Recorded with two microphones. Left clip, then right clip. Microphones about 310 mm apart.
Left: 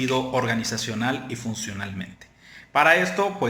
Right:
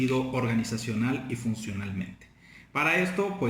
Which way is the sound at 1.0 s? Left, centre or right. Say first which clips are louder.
Left 4 dB; centre.